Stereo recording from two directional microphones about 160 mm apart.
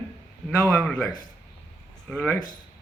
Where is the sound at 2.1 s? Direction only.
10° left (ahead or behind).